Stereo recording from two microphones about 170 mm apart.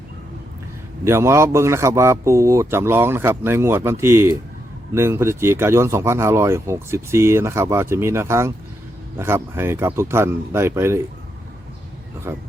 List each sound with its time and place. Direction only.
1.0 s speech: 15° right (ahead or behind)
12.3 s speech: 15° right (ahead or behind)